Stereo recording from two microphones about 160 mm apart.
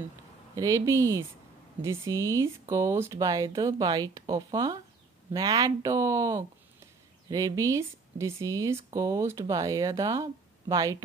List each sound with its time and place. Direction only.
0.6 s speech: 20° right (ahead or behind)